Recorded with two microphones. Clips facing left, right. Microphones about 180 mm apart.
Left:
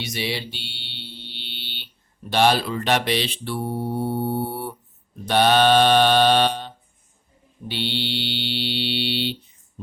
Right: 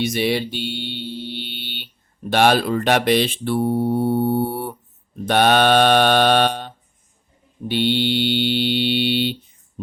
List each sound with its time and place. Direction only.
0.0 s mantra: 50° right (ahead or behind)
5.2 s speech: 55° right (ahead or behind)
7.7 s mantra: 50° right (ahead or behind)